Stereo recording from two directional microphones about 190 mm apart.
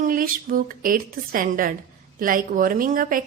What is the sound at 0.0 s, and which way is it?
A woman's voice, 45° right (ahead or behind).